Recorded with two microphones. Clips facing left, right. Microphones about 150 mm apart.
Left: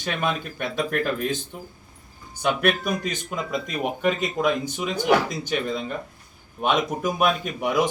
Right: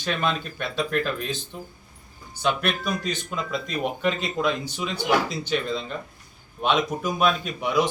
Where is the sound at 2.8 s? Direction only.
50° left (ahead or behind).